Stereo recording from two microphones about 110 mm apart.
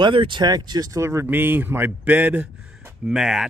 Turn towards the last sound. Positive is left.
turn(degrees=-5)  # may be behind; listen again after turning